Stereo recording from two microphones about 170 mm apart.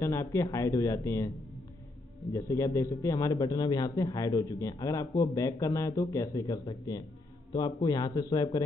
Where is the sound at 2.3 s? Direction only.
20° left (ahead or behind).